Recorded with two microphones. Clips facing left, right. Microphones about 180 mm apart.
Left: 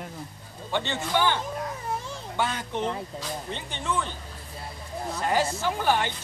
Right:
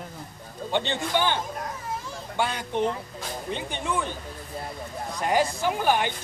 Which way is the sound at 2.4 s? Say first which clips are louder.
Right 3 dB; 15° right (ahead or behind).